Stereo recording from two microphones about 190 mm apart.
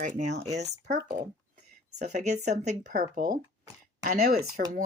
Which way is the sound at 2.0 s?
40° right (ahead or behind).